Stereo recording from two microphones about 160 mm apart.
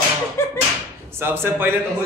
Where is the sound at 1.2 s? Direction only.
15° right (ahead or behind).